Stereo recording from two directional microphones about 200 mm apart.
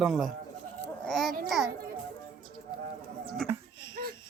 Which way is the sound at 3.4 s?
Centre (ahead or behind).